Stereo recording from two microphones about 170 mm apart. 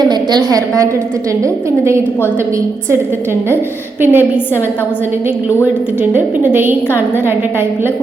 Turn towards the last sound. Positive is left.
turn(degrees=-15)  # may be behind; listen again after turning